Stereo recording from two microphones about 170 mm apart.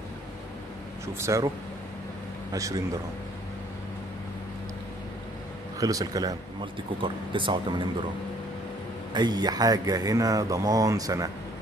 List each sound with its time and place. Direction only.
1.0 s speech: 15° right (ahead or behind)
2.5 s speech: 20° right (ahead or behind)
5.8 s speech: 20° right (ahead or behind)
9.1 s speech: 25° right (ahead or behind)